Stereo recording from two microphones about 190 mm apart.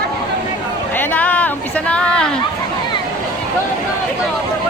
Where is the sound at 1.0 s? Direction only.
10° left (ahead or behind).